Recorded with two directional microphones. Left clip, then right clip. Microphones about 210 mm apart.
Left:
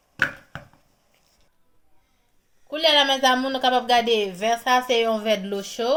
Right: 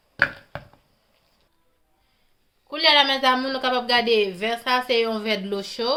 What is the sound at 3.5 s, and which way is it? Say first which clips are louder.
Speech: left 3 dB; 30° right (ahead or behind).